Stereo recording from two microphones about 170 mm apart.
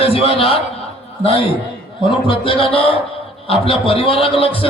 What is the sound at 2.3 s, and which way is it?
A man's voice, 30° left (ahead or behind).